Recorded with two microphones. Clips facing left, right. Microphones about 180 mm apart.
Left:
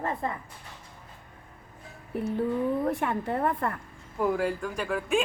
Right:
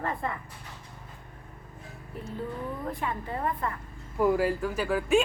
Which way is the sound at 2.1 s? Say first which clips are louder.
Left 8 dB; 65° left (ahead or behind).